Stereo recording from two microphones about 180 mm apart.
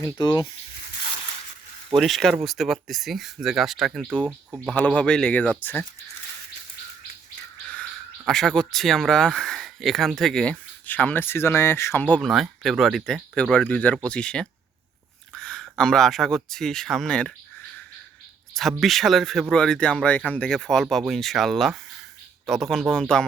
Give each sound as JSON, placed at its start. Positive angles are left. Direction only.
{"t": 0.0, "sound": "speech", "side_deg": 25}
{"t": 2.0, "sound": "speech", "side_deg": 0}
{"t": 7.7, "sound": "a sound", "side_deg": 5}
{"t": 8.3, "sound": "speech", "side_deg": 0}
{"t": 15.3, "sound": "a sound", "side_deg": 5}
{"t": 15.8, "sound": "speech", "side_deg": 5}
{"t": 18.5, "sound": "speech", "side_deg": 0}